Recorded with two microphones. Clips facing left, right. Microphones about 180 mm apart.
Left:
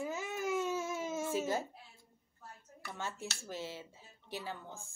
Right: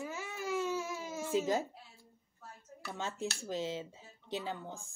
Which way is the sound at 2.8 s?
20° right (ahead or behind).